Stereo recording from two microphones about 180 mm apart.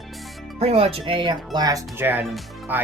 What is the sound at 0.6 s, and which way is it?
Speech, 35° right (ahead or behind).